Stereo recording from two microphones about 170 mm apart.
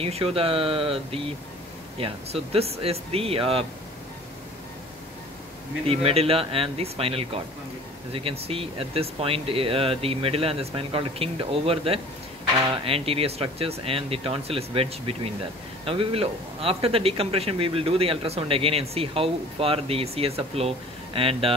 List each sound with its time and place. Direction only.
0.0 s speech: 35° right (ahead or behind)
5.9 s speech: 35° right (ahead or behind)